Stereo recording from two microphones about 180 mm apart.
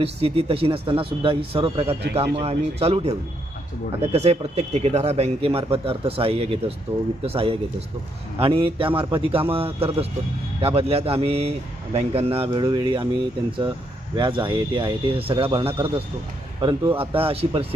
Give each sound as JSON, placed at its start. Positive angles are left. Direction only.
{"t": 0.0, "sound": "speech", "side_deg": -35}
{"t": 14.2, "sound": "speech", "side_deg": -25}